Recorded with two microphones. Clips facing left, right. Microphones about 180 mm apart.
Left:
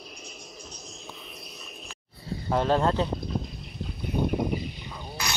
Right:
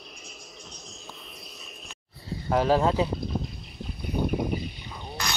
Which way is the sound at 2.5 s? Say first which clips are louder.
Right 1 dB; 5° right (ahead or behind).